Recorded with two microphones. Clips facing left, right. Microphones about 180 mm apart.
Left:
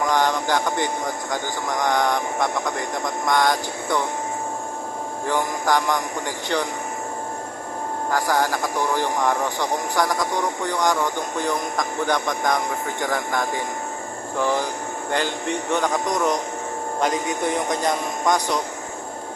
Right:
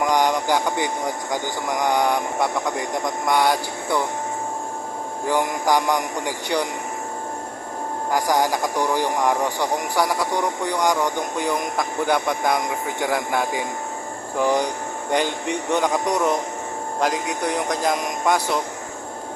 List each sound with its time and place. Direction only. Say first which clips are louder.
0.1 s a sound: right 1 dB; 10° right (ahead or behind)
1.8 s speech: right 1 dB; 10° right (ahead or behind)
5.3 s speech: right 2 dB; 10° right (ahead or behind)
8.1 s speech: right 2 dB; 15° right (ahead or behind)
15.7 s speech: right 2 dB; 10° right (ahead or behind)